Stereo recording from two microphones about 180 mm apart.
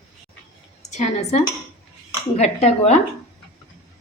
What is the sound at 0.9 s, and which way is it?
A woman's voice, 40° left (ahead or behind).